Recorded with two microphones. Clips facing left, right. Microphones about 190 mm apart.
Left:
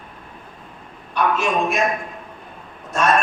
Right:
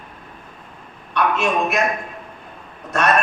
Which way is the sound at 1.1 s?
65° right (ahead or behind).